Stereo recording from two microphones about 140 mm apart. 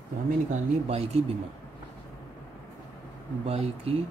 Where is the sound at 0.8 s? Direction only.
50° right (ahead or behind).